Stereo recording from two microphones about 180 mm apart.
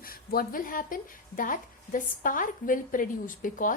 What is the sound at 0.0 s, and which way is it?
Speech, 55° left (ahead or behind).